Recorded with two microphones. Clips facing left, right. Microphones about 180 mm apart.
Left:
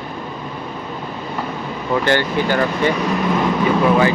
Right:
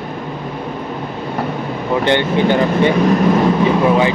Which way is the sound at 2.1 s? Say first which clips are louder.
Right 5 dB; 20° right (ahead or behind).